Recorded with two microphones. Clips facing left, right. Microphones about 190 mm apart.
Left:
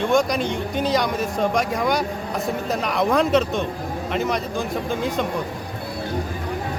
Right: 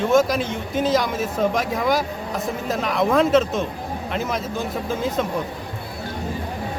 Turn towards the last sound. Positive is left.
turn(degrees=0)  # may be behind; listen again after turning